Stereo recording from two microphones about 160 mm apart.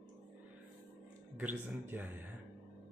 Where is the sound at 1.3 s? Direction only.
10° right (ahead or behind).